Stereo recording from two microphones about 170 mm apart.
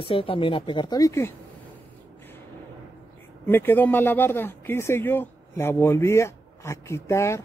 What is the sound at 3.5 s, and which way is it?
Speech, 10° left (ahead or behind).